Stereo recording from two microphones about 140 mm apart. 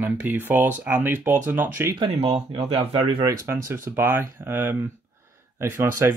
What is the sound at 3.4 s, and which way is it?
Speech, 15° right (ahead or behind).